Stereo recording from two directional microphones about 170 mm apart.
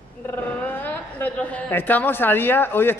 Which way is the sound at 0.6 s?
10° left (ahead or behind).